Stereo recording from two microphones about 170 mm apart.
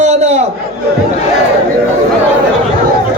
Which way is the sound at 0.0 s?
40° right (ahead or behind).